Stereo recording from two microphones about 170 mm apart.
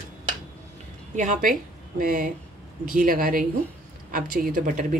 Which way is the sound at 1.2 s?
50° right (ahead or behind).